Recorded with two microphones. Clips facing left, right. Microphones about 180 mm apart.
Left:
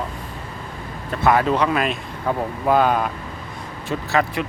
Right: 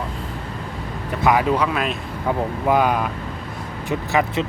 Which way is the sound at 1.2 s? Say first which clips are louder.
Even; 10° right (ahead or behind).